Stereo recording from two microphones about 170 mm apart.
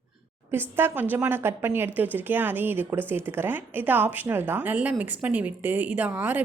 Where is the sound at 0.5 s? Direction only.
10° right (ahead or behind).